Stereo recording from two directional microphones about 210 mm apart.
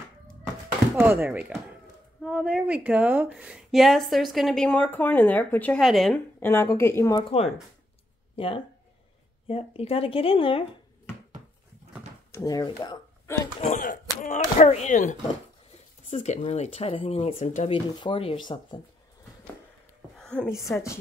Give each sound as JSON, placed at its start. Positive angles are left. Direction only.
{"t": 0.9, "sound": "a woman's voice", "side_deg": -10}
{"t": 7.2, "sound": "speech", "side_deg": 25}
{"t": 12.3, "sound": "speech", "side_deg": 15}
{"t": 13.6, "sound": "speech", "side_deg": 35}
{"t": 17.7, "sound": "speech", "side_deg": 20}
{"t": 20.2, "sound": "a woman's voice", "side_deg": 5}
{"t": 20.7, "sound": "a woman's voice", "side_deg": 15}